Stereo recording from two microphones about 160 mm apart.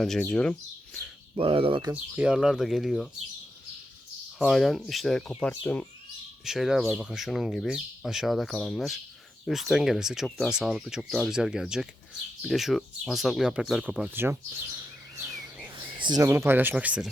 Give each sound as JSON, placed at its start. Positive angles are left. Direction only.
{"t": 0.0, "sound": "speech", "side_deg": 5}
{"t": 1.4, "sound": "speech", "side_deg": -35}
{"t": 1.9, "sound": "speech", "side_deg": -5}
{"t": 4.4, "sound": "speech", "side_deg": 0}
{"t": 6.4, "sound": "speech", "side_deg": 0}
{"t": 16.0, "sound": "speech", "side_deg": -25}